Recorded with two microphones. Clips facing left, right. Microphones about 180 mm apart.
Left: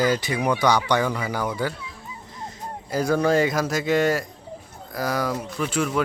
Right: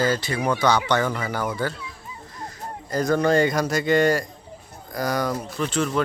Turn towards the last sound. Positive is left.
turn(degrees=10)  # may be behind; listen again after turning